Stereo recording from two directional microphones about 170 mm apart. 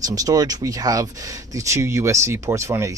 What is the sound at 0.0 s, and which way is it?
Speech, 20° right (ahead or behind).